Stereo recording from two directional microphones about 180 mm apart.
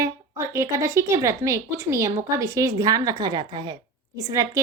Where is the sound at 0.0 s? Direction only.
15° right (ahead or behind).